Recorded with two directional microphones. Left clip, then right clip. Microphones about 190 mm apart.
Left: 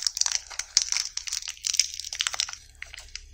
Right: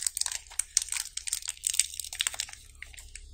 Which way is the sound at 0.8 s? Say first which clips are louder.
Left 7 dB; 20° left (ahead or behind).